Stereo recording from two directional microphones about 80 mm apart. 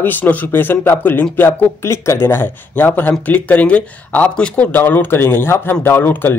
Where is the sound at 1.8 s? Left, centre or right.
Left.